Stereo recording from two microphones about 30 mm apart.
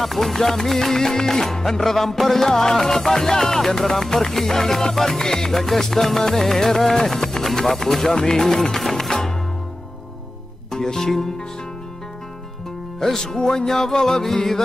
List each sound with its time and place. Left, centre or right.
0.0 s music: centre
10.7 s music: centre
13.0 s music: centre